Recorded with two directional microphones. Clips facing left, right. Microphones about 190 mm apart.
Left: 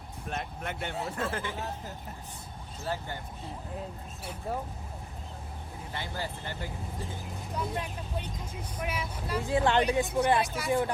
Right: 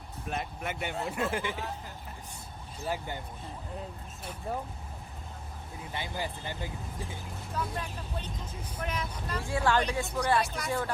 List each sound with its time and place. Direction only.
0.3 s speech: 5° right (ahead or behind)
1.3 s speech: 15° right (ahead or behind)
2.8 s speech: 15° right (ahead or behind)
4.2 s speech: 10° left (ahead or behind)
5.9 s speech: 15° right (ahead or behind)
7.5 s speech: 15° left (ahead or behind)
9.4 s speech: 20° left (ahead or behind)
10.4 s speech: centre (ahead or behind)
10.7 s speech: 15° left (ahead or behind)